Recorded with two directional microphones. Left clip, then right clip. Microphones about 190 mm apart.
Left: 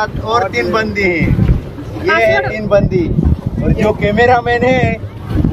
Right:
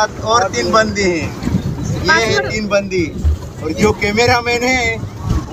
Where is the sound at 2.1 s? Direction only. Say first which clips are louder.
Left 3 dB; 70° right (ahead or behind).